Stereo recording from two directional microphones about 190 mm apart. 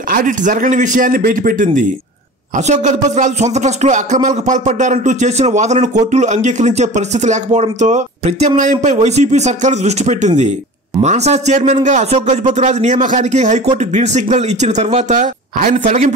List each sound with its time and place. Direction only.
0.1 s a man's voice: 45° right (ahead or behind)